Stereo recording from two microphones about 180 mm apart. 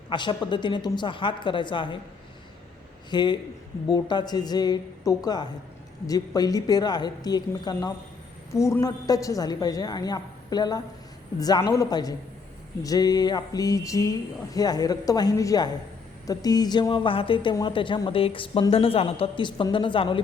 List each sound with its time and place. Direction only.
0.1 s a woman's voice: 25° left (ahead or behind)
3.1 s a woman's voice: 25° left (ahead or behind)